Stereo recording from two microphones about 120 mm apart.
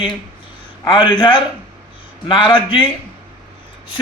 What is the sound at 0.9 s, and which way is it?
A man's voice, 40° left (ahead or behind).